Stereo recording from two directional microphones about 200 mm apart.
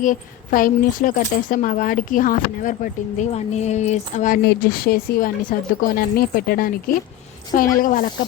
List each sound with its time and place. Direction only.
0.0 s a woman's voice: 40° left (ahead or behind)
4.4 s speech: 45° left (ahead or behind)